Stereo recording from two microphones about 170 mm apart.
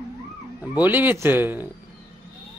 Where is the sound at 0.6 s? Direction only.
10° right (ahead or behind).